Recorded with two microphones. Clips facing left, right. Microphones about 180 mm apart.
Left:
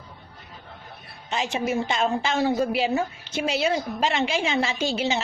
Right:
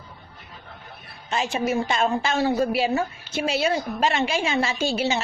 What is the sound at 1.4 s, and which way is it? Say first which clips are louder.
Speech: right 2 dB; 15° left (ahead or behind).